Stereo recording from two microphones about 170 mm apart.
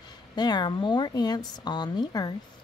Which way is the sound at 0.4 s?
25° left (ahead or behind).